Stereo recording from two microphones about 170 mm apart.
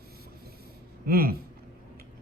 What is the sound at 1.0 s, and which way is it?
Speech, 65° right (ahead or behind).